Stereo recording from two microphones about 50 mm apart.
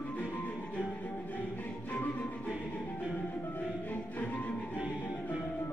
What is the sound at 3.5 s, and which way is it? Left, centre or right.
Music, left.